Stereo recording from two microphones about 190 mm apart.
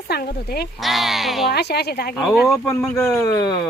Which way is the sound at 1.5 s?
60° left (ahead or behind).